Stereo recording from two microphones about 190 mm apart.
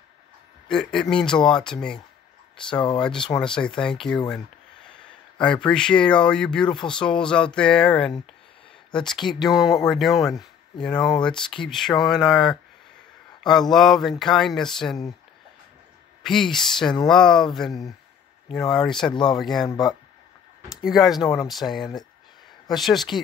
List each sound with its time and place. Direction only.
0.7 s speech: 5° left (ahead or behind)
3.3 s speech: 5° left (ahead or behind)
5.4 s speech: 5° left (ahead or behind)
16.2 s speech: centre (ahead or behind)
19.6 s speech: 20° left (ahead or behind)
20.6 s speech: centre (ahead or behind)